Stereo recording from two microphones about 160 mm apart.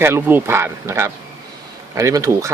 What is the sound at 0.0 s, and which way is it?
Speech, 15° right (ahead or behind).